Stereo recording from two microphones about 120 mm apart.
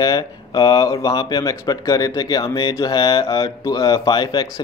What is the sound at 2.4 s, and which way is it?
Speech, 45° left (ahead or behind).